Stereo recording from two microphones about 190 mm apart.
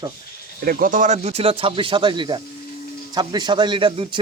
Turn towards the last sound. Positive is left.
turn(degrees=-25)  # may be behind; listen again after turning